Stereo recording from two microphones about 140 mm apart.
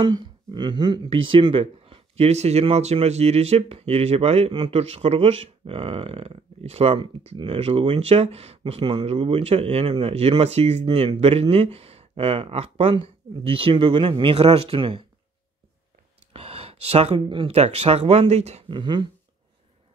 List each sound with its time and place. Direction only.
0.0 s speech: 30° right (ahead or behind)
16.3 s speech: 45° right (ahead or behind)
18.7 s beatboxing: 35° right (ahead or behind)